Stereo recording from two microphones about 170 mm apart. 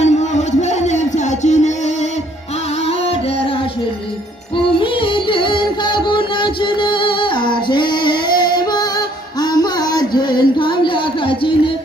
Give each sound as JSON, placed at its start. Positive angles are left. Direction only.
{"t": 0.0, "sound": "a sound", "side_deg": 40}
{"t": 0.6, "sound": "music", "side_deg": 45}
{"t": 4.7, "sound": "music", "side_deg": 30}